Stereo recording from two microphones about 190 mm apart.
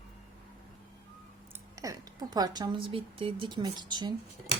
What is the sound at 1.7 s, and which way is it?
A woman's voice, 20° right (ahead or behind).